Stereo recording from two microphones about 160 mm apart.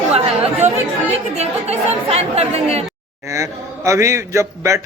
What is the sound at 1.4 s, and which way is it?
Speech, 40° right (ahead or behind).